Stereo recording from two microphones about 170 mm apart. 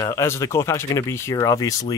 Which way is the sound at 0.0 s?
20° left (ahead or behind).